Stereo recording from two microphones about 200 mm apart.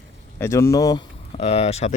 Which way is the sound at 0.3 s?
15° left (ahead or behind).